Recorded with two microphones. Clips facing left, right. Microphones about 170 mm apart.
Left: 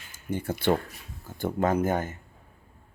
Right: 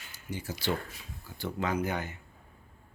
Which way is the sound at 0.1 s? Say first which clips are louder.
Left 8 dB; 55° left (ahead or behind).